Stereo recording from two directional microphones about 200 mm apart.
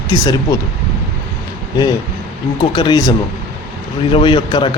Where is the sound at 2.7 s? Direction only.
20° left (ahead or behind).